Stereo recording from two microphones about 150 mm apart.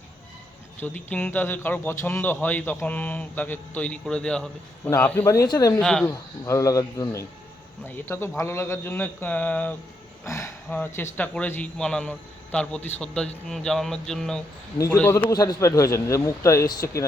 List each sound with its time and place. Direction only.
0.8 s speech: 10° left (ahead or behind)
5.8 s speech: 5° left (ahead or behind)
6.1 s speech: 20° left (ahead or behind); by 14.4 s 5° left (ahead or behind)
14.8 s speech: 15° left (ahead or behind)